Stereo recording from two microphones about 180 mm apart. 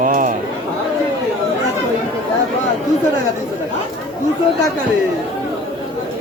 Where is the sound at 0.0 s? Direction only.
50° right (ahead or behind).